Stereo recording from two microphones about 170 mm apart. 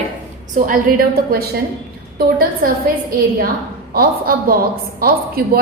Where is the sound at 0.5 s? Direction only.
55° right (ahead or behind).